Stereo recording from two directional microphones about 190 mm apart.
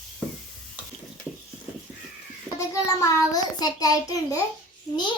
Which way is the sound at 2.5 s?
15° left (ahead or behind).